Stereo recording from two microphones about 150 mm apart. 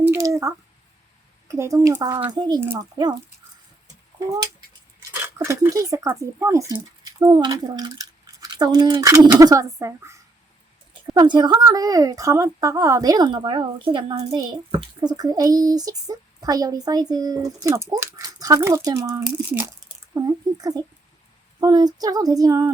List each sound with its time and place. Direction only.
0.1 s a sound: 20° right (ahead or behind)
1.5 s a woman's voice: 20° right (ahead or behind)
5.2 s a woman's voice: 20° right (ahead or behind)
20.1 s a woman's voice: 25° right (ahead or behind)